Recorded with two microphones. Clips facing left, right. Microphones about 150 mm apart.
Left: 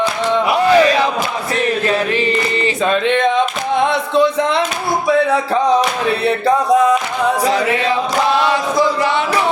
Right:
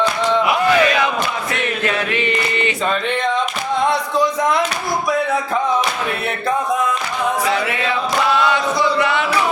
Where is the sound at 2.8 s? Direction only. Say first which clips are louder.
Left 7 dB; 20° left (ahead or behind).